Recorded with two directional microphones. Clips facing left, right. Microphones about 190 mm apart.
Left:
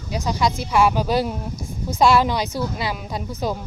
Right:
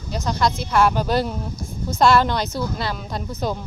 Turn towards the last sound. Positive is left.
turn(degrees=5)  # may be behind; listen again after turning